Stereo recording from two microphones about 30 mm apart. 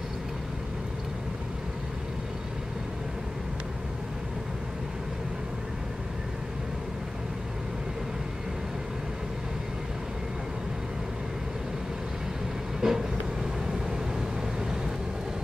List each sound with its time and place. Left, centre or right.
12.8 s vehicle: centre